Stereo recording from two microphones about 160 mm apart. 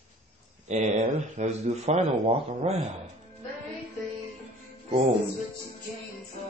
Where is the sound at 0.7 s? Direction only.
45° right (ahead or behind).